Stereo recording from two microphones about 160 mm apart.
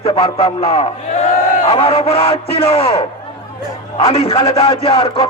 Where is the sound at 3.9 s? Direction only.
35° left (ahead or behind).